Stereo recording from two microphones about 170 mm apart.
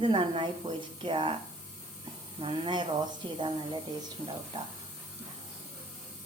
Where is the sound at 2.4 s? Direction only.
30° right (ahead or behind).